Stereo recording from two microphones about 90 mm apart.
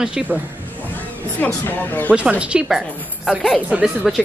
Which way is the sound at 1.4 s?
20° left (ahead or behind).